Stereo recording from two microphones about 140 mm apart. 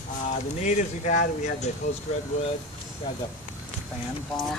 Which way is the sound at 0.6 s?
60° left (ahead or behind).